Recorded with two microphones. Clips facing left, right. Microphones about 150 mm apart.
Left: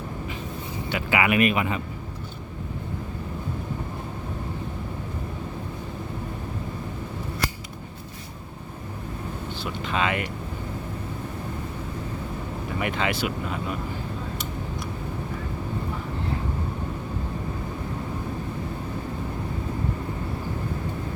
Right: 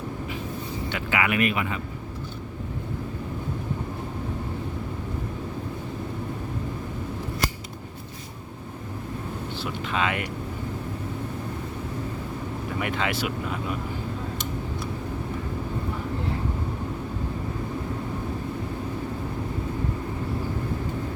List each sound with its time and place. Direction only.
0.9 s speech: 10° left (ahead or behind)
9.8 s speech: centre (ahead or behind)
12.8 s speech: centre (ahead or behind)